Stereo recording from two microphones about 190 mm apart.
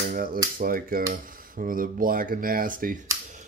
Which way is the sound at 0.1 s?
50° right (ahead or behind).